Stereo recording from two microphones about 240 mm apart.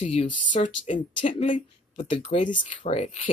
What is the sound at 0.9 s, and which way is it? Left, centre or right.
Speech, left.